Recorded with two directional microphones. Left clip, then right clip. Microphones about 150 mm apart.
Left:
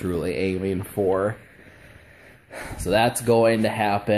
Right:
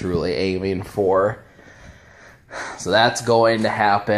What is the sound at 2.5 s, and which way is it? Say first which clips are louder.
Speech: right 4 dB; 30° left (ahead or behind).